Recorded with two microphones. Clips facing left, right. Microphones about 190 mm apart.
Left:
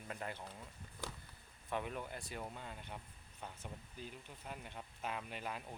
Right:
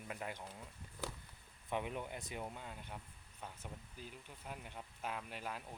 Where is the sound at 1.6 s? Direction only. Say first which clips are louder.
Right 1 dB; 15° right (ahead or behind).